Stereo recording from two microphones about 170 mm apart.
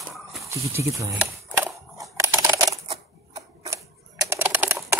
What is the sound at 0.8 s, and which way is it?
Speech, 20° right (ahead or behind).